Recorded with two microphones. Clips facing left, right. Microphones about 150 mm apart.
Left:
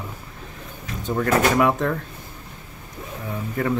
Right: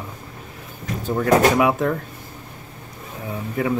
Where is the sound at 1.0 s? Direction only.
5° right (ahead or behind).